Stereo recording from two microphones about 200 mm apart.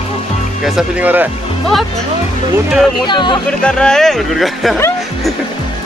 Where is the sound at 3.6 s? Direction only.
5° left (ahead or behind).